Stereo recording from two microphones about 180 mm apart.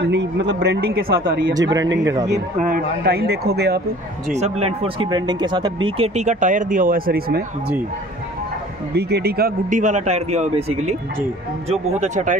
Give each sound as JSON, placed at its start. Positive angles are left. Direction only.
{"t": 0.0, "sound": "a man's voice", "side_deg": -75}
{"t": 1.5, "sound": "speech", "side_deg": -20}
{"t": 2.6, "sound": "speech", "side_deg": -55}
{"t": 4.3, "sound": "speech", "side_deg": -35}
{"t": 5.9, "sound": "speech", "side_deg": -35}
{"t": 8.9, "sound": "speech", "side_deg": -65}
{"t": 9.7, "sound": "speech", "side_deg": -45}